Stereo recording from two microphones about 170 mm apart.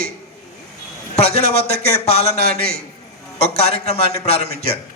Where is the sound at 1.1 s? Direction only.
40° left (ahead or behind).